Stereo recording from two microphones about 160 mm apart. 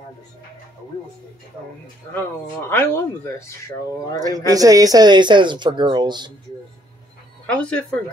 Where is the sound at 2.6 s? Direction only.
15° left (ahead or behind).